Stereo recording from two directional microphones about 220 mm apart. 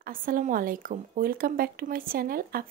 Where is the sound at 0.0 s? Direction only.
40° right (ahead or behind).